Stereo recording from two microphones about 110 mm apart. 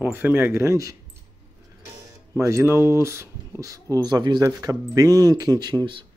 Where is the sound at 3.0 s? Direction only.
25° right (ahead or behind).